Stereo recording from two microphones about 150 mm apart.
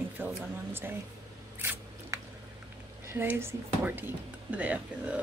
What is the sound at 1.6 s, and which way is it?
Scissors, 15° right (ahead or behind).